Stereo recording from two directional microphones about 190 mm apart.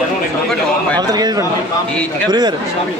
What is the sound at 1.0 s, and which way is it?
A man's voice, 20° right (ahead or behind).